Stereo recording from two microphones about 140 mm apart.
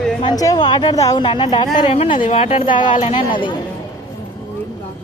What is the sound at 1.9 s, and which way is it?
A woman's voice, 45° left (ahead or behind).